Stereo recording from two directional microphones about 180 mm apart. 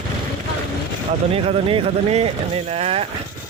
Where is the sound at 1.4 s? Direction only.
35° right (ahead or behind).